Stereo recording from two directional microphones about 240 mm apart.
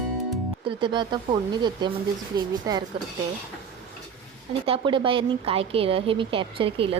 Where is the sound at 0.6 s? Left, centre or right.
Right.